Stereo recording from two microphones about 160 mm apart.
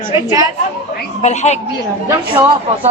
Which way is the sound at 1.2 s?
45° left (ahead or behind).